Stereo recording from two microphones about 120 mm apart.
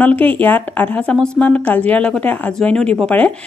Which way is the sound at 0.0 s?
15° left (ahead or behind).